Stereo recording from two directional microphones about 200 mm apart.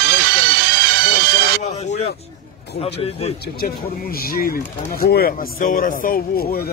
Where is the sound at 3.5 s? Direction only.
50° left (ahead or behind).